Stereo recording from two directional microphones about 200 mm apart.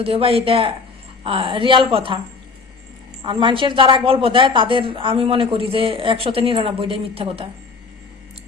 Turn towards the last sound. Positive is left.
turn(degrees=-30)  # may be behind; listen again after turning